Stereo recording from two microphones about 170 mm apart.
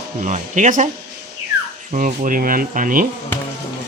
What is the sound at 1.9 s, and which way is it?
Speech, 50° right (ahead or behind).